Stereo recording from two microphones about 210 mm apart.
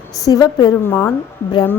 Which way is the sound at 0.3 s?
15° left (ahead or behind).